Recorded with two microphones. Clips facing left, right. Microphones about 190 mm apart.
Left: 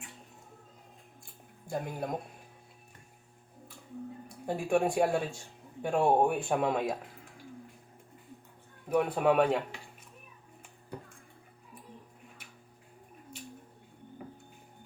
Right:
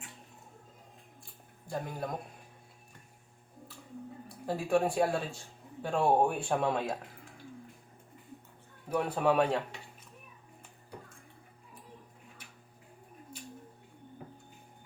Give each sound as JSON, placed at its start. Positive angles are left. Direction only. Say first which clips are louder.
{"t": 1.7, "sound": "speech", "louder": "left 2 dB", "side_deg": 20}
{"t": 4.4, "sound": "speech", "louder": "left 1 dB", "side_deg": 10}
{"t": 8.9, "sound": "speech", "louder": "left 2 dB", "side_deg": 10}